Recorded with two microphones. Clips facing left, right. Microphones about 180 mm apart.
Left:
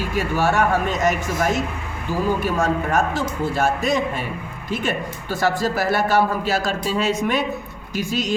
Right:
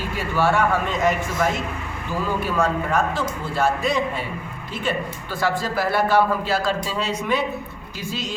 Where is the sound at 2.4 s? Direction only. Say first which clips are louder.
Left 1 dB; 45° left (ahead or behind).